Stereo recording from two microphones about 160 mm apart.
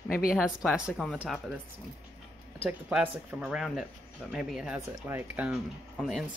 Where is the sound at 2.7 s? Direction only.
10° right (ahead or behind).